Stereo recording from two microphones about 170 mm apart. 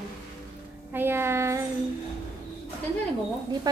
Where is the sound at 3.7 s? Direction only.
25° right (ahead or behind).